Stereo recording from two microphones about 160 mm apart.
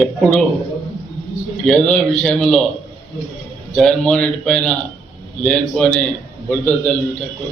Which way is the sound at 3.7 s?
5° left (ahead or behind).